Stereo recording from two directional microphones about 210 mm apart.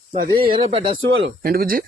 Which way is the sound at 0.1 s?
45° right (ahead or behind).